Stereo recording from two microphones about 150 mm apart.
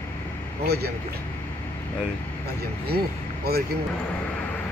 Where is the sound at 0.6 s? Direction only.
90° right.